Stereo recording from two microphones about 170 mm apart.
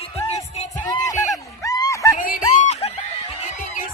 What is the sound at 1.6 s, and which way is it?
Snicker, 20° left (ahead or behind).